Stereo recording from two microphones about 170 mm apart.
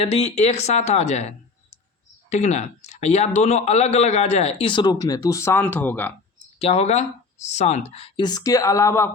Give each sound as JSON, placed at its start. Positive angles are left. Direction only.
{"t": 0.0, "sound": "a man's voice", "side_deg": 40}
{"t": 6.6, "sound": "a man's voice", "side_deg": 40}